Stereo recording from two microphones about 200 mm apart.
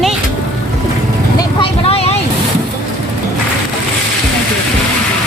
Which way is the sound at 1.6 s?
30° left (ahead or behind).